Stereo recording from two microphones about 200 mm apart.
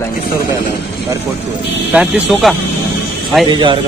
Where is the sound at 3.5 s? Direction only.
25° right (ahead or behind).